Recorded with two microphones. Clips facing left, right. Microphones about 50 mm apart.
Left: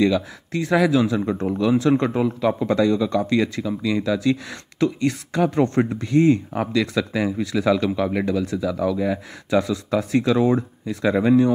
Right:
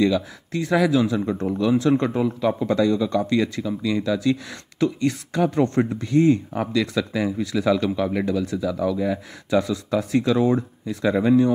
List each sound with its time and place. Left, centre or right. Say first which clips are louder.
0.0 s speech: left 1 dB; left
1.9 s speech: left 1 dB; left
5.4 s speech: left 1 dB; left
8.5 s speech: left 1 dB; left